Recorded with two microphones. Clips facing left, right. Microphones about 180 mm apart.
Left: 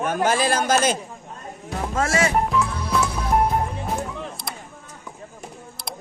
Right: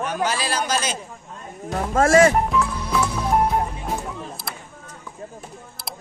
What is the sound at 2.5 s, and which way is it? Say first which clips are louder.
Music: right 1 dB; centre (ahead or behind).